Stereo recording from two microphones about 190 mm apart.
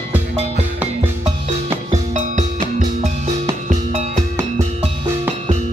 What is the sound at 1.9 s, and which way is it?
Music, 40° right (ahead or behind).